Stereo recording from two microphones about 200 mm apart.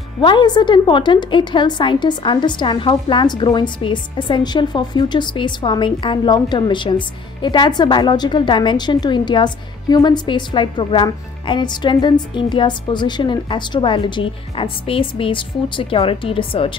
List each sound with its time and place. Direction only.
0.2 s a woman's voice: 25° left (ahead or behind)